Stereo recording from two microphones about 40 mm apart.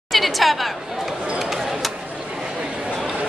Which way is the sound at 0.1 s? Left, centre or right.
Centre.